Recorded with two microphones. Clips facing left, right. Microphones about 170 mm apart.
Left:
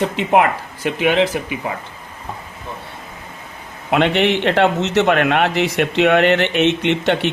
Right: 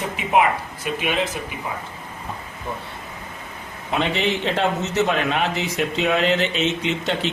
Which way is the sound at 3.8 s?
70° left (ahead or behind).